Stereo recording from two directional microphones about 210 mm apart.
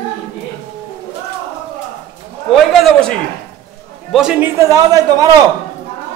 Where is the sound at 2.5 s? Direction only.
Centre (ahead or behind); by 5.4 s 15° right (ahead or behind).